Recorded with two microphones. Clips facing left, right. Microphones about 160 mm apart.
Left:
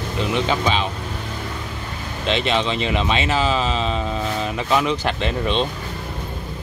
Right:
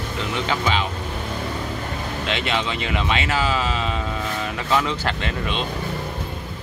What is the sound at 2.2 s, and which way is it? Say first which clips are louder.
Speech: left 5 dB; 25° left (ahead or behind).